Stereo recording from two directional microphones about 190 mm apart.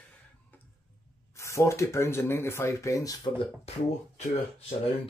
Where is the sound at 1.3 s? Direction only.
15° left (ahead or behind).